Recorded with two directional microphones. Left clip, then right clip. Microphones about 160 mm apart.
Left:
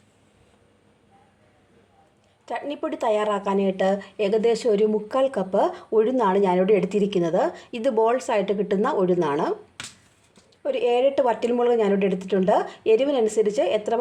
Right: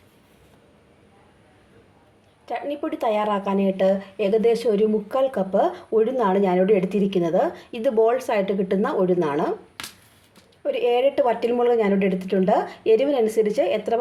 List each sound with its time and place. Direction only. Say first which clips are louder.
2.5 s speech: right 1 dB; 20° left (ahead or behind)
10.6 s a woman's voice: right 1 dB; 20° left (ahead or behind)